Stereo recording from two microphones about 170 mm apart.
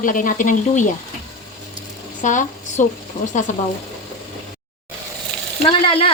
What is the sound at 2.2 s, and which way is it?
Speech, 45° left (ahead or behind).